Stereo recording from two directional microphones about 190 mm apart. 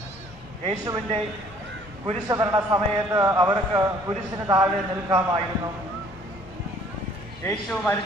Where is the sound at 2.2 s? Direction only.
20° right (ahead or behind).